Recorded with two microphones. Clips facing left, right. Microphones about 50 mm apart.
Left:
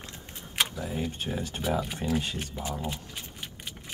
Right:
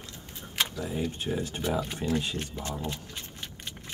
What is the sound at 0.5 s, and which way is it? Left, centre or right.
Speech, centre.